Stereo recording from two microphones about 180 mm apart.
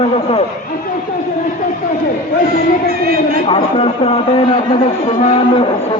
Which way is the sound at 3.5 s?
30° left (ahead or behind).